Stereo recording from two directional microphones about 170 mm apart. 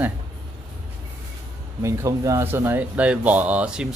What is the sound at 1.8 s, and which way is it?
Speech, 20° right (ahead or behind).